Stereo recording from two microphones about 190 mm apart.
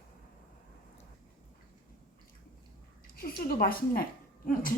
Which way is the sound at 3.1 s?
50° left (ahead or behind).